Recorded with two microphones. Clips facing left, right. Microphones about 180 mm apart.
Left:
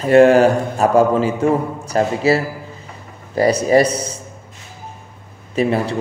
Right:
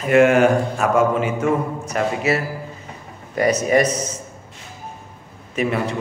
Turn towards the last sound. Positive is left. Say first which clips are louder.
# left 4 dB
turn(degrees=30)  # may be behind; listen again after turning